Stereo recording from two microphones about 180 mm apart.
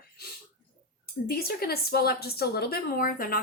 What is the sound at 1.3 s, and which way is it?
Speech, 60° left (ahead or behind).